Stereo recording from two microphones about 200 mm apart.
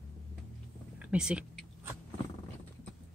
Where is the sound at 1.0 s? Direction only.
5° right (ahead or behind).